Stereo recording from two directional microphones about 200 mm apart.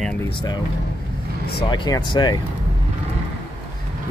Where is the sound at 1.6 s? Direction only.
20° left (ahead or behind).